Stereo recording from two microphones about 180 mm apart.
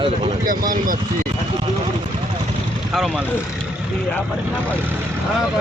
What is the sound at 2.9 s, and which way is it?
Speech, centre (ahead or behind).